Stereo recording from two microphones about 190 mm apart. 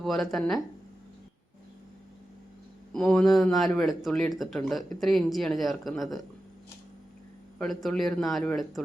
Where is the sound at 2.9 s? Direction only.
5° left (ahead or behind).